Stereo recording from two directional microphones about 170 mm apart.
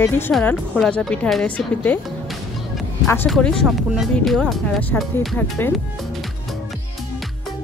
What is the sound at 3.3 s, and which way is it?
Speech, 5° left (ahead or behind).